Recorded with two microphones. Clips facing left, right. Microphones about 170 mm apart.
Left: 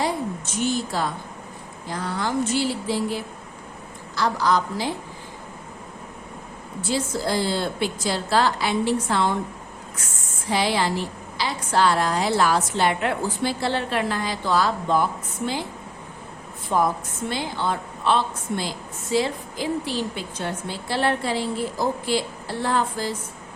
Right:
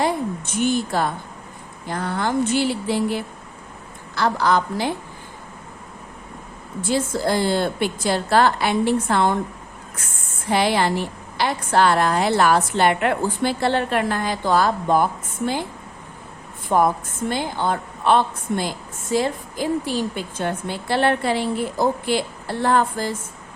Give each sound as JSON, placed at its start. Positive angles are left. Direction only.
{"t": 0.0, "sound": "a woman's voice", "side_deg": -55}
{"t": 6.8, "sound": "a woman's voice", "side_deg": -55}
{"t": 10.5, "sound": "a woman's voice", "side_deg": -55}
{"t": 16.6, "sound": "a woman's voice", "side_deg": -50}